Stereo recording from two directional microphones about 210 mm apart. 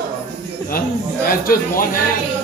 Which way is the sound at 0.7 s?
45° left (ahead or behind).